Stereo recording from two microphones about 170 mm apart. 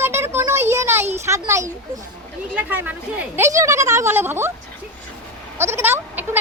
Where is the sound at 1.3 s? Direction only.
15° right (ahead or behind).